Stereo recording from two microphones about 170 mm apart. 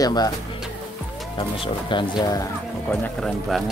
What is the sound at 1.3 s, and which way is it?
Speech, 30° left (ahead or behind).